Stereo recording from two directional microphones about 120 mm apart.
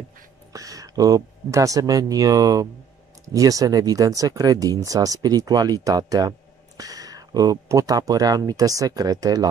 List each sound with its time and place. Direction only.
0.5 s speech: 30° right (ahead or behind)